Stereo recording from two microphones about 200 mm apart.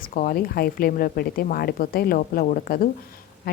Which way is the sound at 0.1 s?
45° left (ahead or behind).